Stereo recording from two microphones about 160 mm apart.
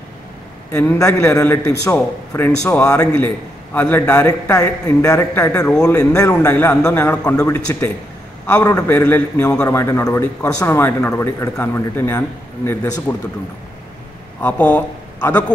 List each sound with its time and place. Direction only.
0.7 s a man's voice: 15° left (ahead or behind)
14.4 s speech: 10° left (ahead or behind)